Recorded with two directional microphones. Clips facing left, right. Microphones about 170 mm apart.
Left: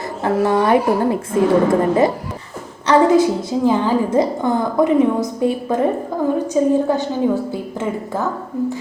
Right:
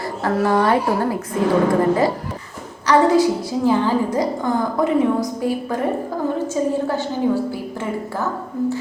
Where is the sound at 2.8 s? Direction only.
20° left (ahead or behind).